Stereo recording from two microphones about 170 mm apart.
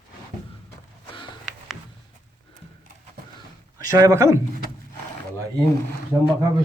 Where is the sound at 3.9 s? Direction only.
20° right (ahead or behind).